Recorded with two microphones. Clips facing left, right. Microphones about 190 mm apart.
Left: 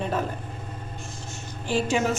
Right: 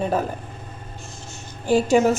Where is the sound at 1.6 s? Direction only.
45° right (ahead or behind).